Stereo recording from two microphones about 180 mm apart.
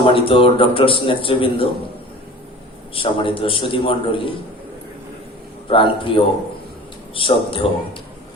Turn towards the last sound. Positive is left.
turn(degrees=30)  # may be behind; listen again after turning